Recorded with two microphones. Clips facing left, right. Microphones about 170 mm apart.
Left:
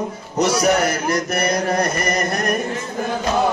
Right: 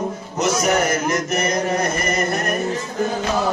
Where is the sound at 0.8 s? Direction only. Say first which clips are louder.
Even; 35° left (ahead or behind).